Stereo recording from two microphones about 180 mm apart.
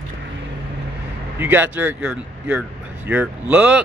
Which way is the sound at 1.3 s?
10° right (ahead or behind).